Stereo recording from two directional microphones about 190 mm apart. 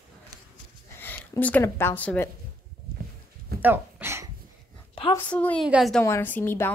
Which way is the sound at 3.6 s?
10° right (ahead or behind).